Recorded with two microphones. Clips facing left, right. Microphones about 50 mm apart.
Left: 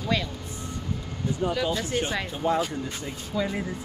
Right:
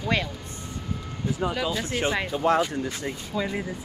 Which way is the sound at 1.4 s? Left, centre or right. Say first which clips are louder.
Left 1 dB; right.